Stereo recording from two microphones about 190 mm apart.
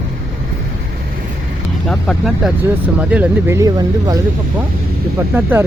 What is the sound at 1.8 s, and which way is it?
Speech, centre (ahead or behind).